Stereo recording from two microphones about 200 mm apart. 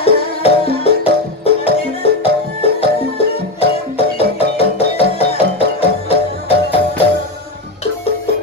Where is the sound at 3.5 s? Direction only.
30° left (ahead or behind).